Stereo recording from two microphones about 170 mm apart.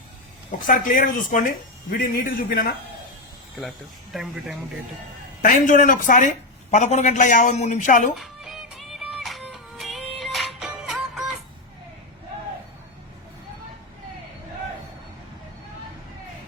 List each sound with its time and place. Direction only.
0.7 s speech: 55° left (ahead or behind)
4.1 s speech: centre (ahead or behind)
5.4 s speech: 50° left (ahead or behind)
8.2 s music: centre (ahead or behind)